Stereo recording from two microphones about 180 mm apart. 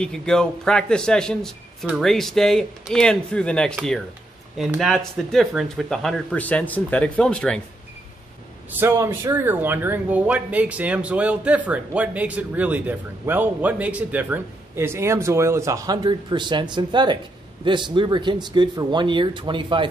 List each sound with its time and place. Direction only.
0.0 s speech: 5° left (ahead or behind)
8.7 s speech: 15° right (ahead or behind)